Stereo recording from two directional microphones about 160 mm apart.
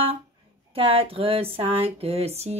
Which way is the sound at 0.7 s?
35° right (ahead or behind).